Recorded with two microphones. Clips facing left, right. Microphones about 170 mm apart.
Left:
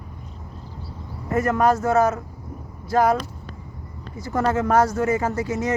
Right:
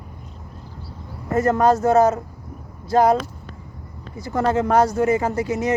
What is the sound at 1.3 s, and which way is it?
Speech, 35° right (ahead or behind).